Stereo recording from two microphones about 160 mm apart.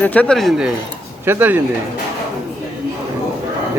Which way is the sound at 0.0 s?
10° left (ahead or behind).